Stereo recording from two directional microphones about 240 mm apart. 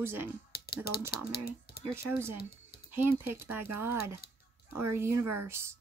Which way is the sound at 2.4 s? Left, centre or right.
Left.